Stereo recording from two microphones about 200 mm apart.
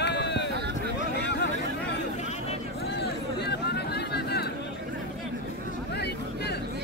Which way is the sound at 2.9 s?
55° left (ahead or behind).